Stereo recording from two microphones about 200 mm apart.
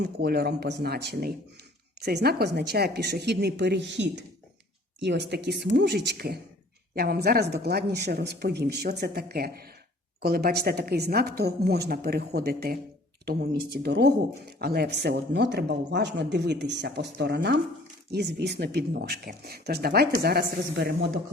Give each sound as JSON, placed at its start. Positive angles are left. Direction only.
{"t": 0.0, "sound": "speech", "side_deg": -55}